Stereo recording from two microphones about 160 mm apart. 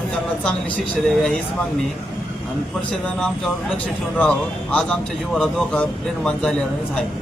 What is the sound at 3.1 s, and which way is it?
A man's voice, 5° left (ahead or behind).